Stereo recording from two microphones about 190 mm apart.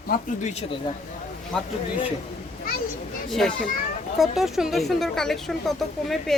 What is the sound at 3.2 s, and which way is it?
A woman's voice, centre (ahead or behind).